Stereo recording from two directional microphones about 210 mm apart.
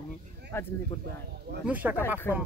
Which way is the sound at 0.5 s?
10° left (ahead or behind).